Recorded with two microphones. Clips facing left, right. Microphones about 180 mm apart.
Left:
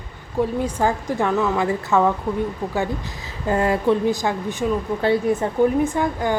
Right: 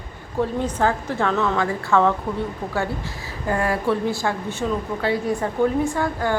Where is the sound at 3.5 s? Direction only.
20° left (ahead or behind).